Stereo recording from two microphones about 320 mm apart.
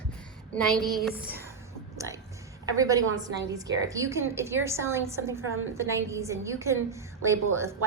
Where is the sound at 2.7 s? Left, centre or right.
Centre.